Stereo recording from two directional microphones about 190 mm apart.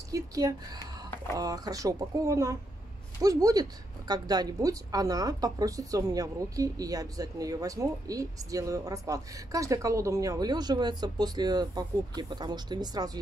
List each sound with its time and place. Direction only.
0.1 s a woman's voice: 20° right (ahead or behind)